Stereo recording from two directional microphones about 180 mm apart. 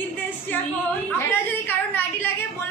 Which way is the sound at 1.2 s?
10° left (ahead or behind).